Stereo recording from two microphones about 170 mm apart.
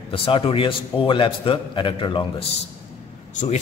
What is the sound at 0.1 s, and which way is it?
A man's voice, 30° left (ahead or behind).